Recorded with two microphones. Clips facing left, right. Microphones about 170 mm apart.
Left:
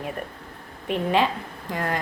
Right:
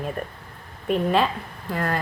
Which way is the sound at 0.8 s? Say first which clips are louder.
Right 1 dB; 15° left (ahead or behind).